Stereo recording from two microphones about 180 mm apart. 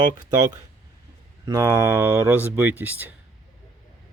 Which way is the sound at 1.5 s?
15° right (ahead or behind).